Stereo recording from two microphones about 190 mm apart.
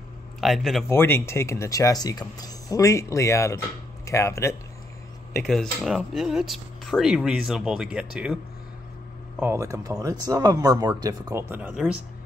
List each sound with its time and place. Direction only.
0.4 s speech: centre (ahead or behind)
0.8 s speech: 10° left (ahead or behind)
5.4 s speech: centre (ahead or behind)
9.4 s speech: 15° right (ahead or behind)